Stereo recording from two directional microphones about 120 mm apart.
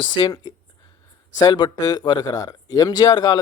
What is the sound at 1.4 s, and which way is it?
Speech, 35° left (ahead or behind).